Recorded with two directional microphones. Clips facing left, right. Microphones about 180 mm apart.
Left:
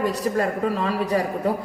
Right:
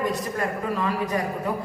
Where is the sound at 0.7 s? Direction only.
30° left (ahead or behind).